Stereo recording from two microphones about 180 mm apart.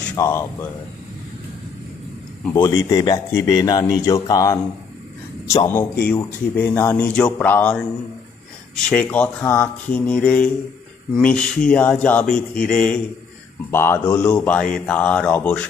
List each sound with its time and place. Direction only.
0.0 s a man's voice: 10° left (ahead or behind)
2.8 s speech: 20° left (ahead or behind)